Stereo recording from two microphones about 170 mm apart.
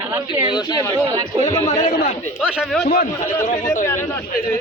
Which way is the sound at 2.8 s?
65° left (ahead or behind).